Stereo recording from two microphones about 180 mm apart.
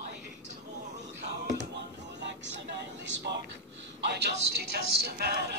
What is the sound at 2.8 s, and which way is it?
Speech, 70° right (ahead or behind).